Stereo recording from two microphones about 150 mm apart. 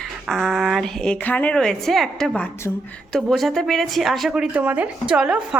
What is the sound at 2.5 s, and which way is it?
Speech, 15° left (ahead or behind).